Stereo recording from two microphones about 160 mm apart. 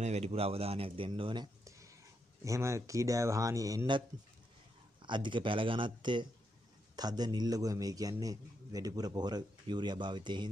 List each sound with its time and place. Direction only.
0.0 s a man's voice: 40° right (ahead or behind); by 4.0 s 25° right (ahead or behind)
5.0 s a man's voice: 30° right (ahead or behind)